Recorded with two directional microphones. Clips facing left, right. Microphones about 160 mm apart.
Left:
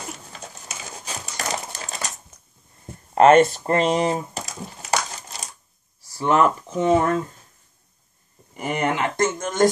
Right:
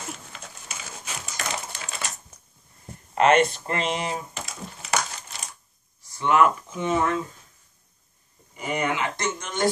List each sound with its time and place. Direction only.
0.3 s a sound: 35° left (ahead or behind)
3.2 s speech: 45° left (ahead or behind)
6.1 s speech: 35° left (ahead or behind)
8.5 s speech: 50° left (ahead or behind)